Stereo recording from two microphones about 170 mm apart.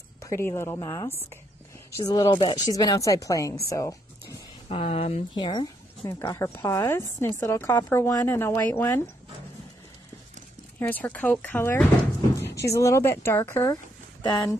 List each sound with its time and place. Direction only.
0.2 s speech: 15° left (ahead or behind)
4.6 s speech: 35° left (ahead or behind); by 9.0 s 10° left (ahead or behind)
10.8 s speech: 10° left (ahead or behind)